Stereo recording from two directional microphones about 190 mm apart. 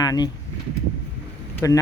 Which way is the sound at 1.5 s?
15° left (ahead or behind).